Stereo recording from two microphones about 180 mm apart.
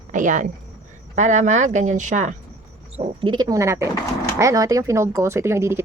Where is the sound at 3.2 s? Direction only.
25° right (ahead or behind).